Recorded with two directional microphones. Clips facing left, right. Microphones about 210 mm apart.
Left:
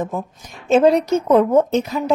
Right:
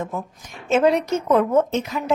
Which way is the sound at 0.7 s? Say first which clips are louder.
Left 4 dB; 35° left (ahead or behind).